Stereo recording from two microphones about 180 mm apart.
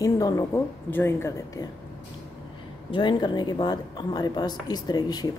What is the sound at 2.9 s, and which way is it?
A woman's voice, 25° left (ahead or behind).